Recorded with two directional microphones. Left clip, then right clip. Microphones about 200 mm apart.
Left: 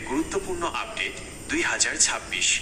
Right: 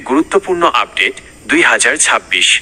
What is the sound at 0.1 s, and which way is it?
A man's voice, 50° right (ahead or behind).